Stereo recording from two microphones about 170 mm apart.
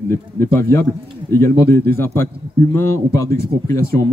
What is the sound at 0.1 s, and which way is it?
Speech, 15° left (ahead or behind).